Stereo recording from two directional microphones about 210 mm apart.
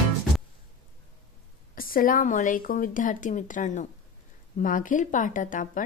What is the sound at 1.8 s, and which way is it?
A woman's voice, 40° left (ahead or behind).